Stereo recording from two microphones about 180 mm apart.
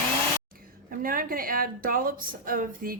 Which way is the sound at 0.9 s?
50° right (ahead or behind).